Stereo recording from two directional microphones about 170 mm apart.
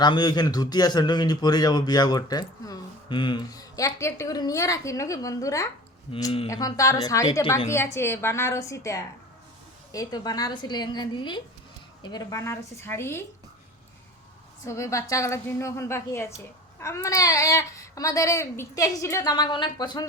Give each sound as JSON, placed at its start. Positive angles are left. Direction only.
{"t": 0.0, "sound": "a man's voice", "side_deg": 25}
{"t": 6.1, "sound": "speech", "side_deg": 30}
{"t": 6.5, "sound": "a man's voice", "side_deg": 20}
{"t": 14.6, "sound": "a woman's voice", "side_deg": 15}